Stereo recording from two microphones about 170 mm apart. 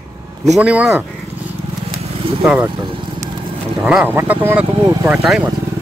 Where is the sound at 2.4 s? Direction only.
5° right (ahead or behind).